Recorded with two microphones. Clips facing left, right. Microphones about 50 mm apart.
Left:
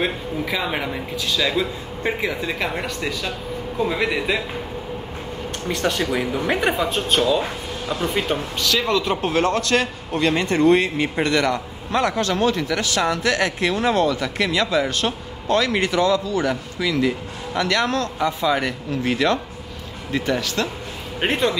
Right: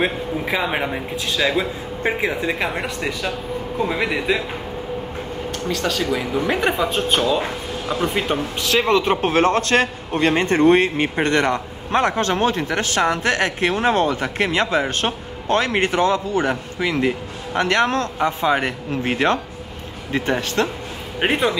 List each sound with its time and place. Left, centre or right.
0.6 s speech: centre
1.1 s speech: right
2.8 s speech: centre
5.7 s speech: left
6.4 s speech: centre
8.5 s a man's voice: right
21.2 s speech: centre